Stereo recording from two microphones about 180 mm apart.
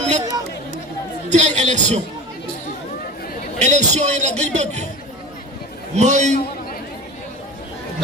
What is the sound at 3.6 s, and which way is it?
A man's voice, 40° right (ahead or behind).